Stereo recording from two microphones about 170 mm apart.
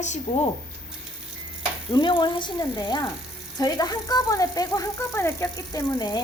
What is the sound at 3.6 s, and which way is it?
Speech, 20° left (ahead or behind).